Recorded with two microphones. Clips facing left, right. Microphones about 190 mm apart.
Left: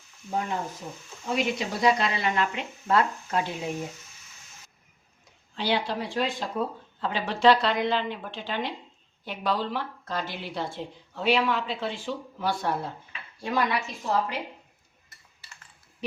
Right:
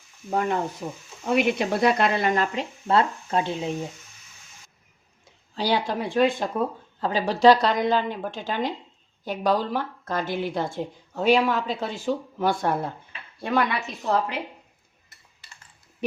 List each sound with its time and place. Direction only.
0.3 s frying: 70° right (ahead or behind)
1.2 s speech: 60° right (ahead or behind); by 3.7 s 25° right (ahead or behind)
5.5 s a woman's voice: 40° right (ahead or behind); by 14.3 s 60° right (ahead or behind)